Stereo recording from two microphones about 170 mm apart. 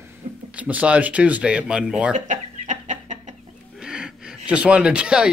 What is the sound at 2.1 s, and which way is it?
Chicken, 45° right (ahead or behind).